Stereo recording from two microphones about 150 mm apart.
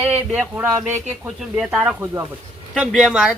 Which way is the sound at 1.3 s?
5° right (ahead or behind).